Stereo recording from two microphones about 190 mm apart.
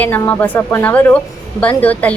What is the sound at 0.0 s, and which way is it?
A woman's voice, 10° left (ahead or behind).